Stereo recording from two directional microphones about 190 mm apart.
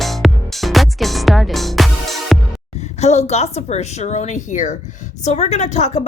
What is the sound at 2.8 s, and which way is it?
A woman's voice, 35° left (ahead or behind).